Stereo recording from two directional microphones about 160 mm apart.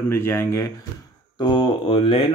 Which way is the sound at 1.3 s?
30° left (ahead or behind).